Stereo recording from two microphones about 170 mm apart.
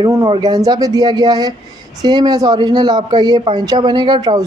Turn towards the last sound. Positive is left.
turn(degrees=-25)  # may be behind; listen again after turning